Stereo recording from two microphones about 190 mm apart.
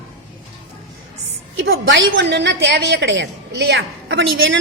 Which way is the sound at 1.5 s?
90° right.